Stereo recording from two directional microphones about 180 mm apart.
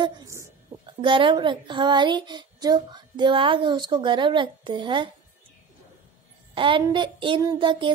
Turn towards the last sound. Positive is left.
turn(degrees=-25)  # may be behind; listen again after turning